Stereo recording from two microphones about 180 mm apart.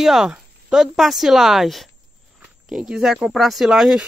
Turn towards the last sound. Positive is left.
turn(degrees=0)  # may be behind; listen again after turning